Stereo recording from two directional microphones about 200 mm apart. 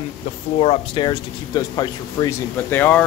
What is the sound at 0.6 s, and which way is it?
A woman's voice, 25° left (ahead or behind).